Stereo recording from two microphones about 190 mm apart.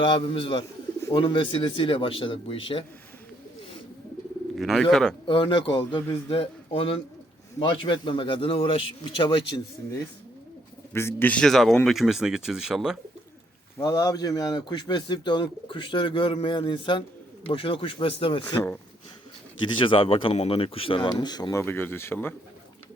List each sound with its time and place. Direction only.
0.0 s a man's voice: 30° left (ahead or behind)
4.5 s speech: centre (ahead or behind)
5.2 s a man's voice: 25° left (ahead or behind)
10.9 s speech: 10° left (ahead or behind)
13.7 s a man's voice: 20° left (ahead or behind)
19.8 s a man's voice: 30° left (ahead or behind); by 22.4 s 10° left (ahead or behind)